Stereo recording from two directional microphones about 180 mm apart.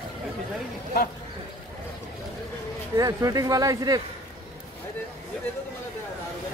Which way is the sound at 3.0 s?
20° right (ahead or behind).